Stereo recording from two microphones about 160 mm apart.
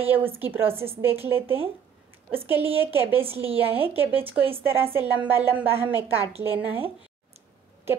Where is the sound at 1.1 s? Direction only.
35° right (ahead or behind).